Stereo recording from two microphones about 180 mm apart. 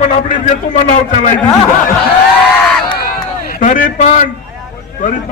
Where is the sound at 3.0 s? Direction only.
50° left (ahead or behind).